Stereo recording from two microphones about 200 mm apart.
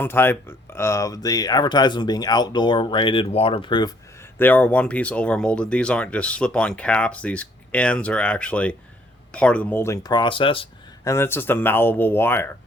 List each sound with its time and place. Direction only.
0.0 s speech: 10° left (ahead or behind); by 10.7 s 25° left (ahead or behind)
11.0 s speech: 15° left (ahead or behind)